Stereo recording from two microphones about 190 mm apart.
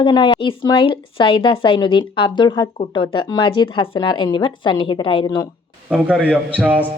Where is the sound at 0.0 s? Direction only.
25° left (ahead or behind).